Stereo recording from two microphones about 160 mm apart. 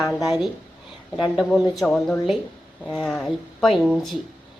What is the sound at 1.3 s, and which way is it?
A woman's voice, centre (ahead or behind).